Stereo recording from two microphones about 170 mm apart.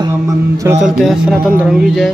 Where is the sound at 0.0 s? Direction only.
20° right (ahead or behind).